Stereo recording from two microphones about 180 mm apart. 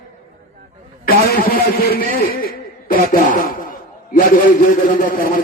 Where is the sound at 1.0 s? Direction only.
55° left (ahead or behind).